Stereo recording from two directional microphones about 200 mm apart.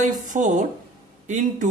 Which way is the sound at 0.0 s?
40° right (ahead or behind).